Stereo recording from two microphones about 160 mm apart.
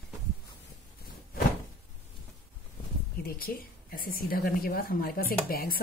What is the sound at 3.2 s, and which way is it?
Speech, 65° left (ahead or behind).